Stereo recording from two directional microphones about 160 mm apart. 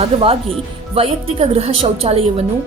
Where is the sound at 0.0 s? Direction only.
35° right (ahead or behind).